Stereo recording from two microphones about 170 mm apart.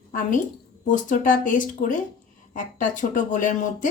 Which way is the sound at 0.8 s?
50° left (ahead or behind).